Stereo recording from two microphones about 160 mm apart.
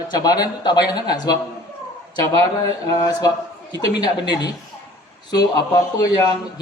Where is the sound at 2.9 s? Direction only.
25° left (ahead or behind).